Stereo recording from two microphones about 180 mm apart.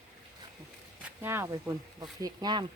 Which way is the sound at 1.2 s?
15° right (ahead or behind).